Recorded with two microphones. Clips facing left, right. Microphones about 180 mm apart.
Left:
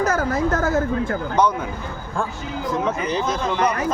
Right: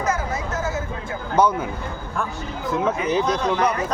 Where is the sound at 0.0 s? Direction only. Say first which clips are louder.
Left 5 dB; 65° left (ahead or behind).